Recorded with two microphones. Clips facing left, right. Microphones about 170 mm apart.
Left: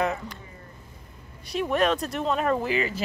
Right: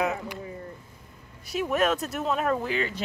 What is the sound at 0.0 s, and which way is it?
Speech, 5° right (ahead or behind).